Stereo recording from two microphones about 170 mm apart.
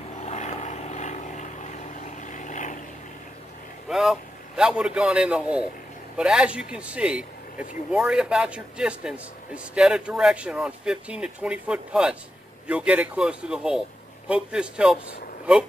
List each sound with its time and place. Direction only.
0.2 s vehicle: 40° left (ahead or behind)
3.9 s a man's voice: centre (ahead or behind)